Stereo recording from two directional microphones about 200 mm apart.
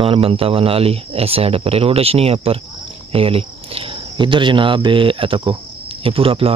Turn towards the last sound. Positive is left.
turn(degrees=-30)  # may be behind; listen again after turning